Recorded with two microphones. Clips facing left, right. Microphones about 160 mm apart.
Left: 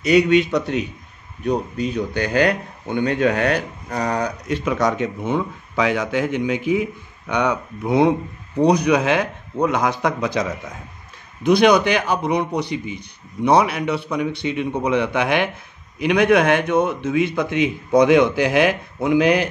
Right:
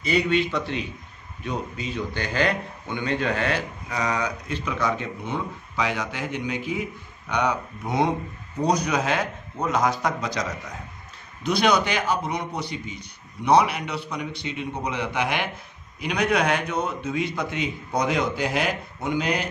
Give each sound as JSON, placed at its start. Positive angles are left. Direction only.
{"t": 0.2, "sound": "speech", "side_deg": 50}
{"t": 2.0, "sound": "a man's voice", "side_deg": 50}